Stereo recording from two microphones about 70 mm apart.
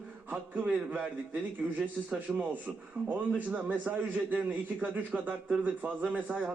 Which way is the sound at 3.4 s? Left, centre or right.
Right.